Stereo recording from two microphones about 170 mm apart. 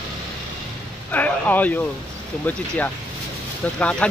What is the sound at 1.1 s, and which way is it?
Speech, 10° left (ahead or behind).